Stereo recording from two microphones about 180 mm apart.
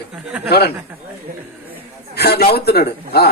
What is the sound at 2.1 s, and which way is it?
A man's voice, 60° left (ahead or behind).